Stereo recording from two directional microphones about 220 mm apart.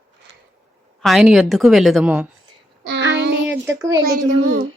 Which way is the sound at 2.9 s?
50° right (ahead or behind).